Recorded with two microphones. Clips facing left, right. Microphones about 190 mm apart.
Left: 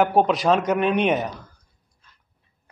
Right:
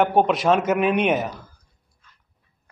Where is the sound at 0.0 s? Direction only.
Centre (ahead or behind).